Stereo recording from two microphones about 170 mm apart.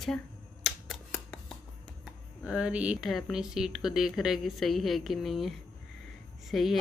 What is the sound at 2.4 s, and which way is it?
Speech, 5° right (ahead or behind).